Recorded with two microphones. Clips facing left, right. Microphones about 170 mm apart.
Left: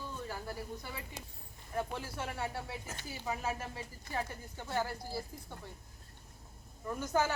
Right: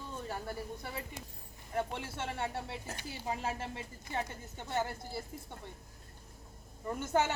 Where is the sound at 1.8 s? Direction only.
25° right (ahead or behind).